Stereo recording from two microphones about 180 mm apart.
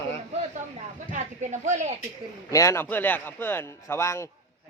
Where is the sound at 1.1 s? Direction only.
40° right (ahead or behind).